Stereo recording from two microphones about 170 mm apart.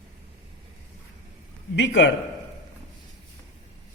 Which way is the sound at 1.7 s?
90° left.